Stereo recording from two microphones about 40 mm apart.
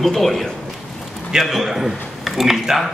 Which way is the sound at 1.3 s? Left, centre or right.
Centre.